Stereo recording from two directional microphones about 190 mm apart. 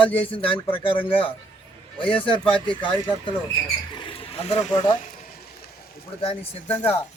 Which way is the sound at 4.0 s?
30° left (ahead or behind).